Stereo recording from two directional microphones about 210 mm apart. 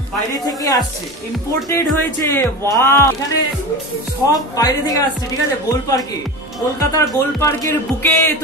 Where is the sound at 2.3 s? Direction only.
15° left (ahead or behind).